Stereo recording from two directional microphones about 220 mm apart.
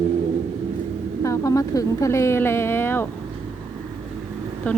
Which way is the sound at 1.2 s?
15° left (ahead or behind).